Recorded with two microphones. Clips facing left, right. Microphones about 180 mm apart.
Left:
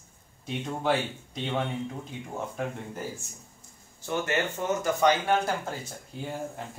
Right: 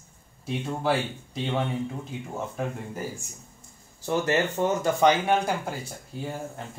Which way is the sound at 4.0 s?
35° right (ahead or behind).